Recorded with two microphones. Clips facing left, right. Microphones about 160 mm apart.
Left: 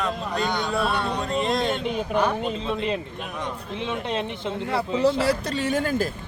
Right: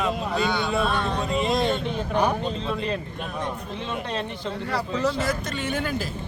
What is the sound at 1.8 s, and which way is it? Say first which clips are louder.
Speech: even; 15° left (ahead or behind).